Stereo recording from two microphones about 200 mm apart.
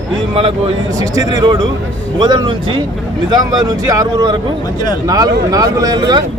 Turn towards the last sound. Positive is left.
turn(degrees=-20)  # may be behind; listen again after turning